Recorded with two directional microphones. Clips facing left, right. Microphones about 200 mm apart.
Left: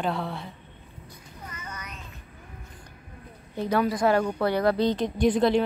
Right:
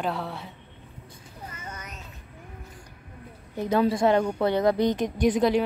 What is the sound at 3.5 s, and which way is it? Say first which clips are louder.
A woman's voice: right 2 dB; 15° right (ahead or behind).